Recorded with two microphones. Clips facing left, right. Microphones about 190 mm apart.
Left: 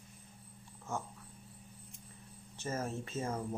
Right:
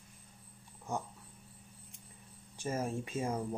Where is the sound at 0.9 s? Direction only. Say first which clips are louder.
Right 2 dB; 15° right (ahead or behind).